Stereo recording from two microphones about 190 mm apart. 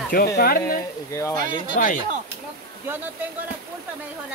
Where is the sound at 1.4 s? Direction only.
40° right (ahead or behind).